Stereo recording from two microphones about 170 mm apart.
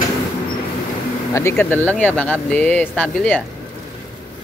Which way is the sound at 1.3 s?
15° left (ahead or behind).